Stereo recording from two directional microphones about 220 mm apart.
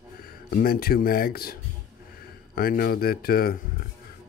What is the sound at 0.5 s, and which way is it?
Speech, 40° left (ahead or behind).